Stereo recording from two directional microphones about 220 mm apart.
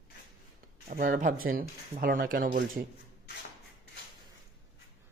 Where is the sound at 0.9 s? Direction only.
40° right (ahead or behind).